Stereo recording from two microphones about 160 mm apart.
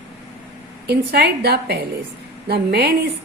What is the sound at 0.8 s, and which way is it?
A woman's voice, 80° right.